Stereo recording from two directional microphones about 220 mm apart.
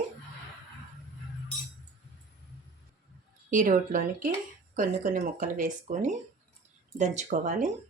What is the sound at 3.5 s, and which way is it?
Speech, 35° right (ahead or behind).